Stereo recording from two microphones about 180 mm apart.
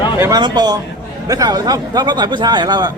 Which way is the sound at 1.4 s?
20° right (ahead or behind).